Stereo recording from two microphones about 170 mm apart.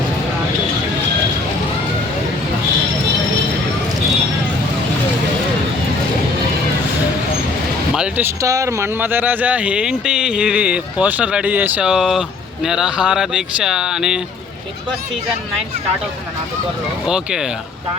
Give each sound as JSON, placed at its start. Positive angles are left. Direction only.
{"t": 7.9, "sound": "speech", "side_deg": -15}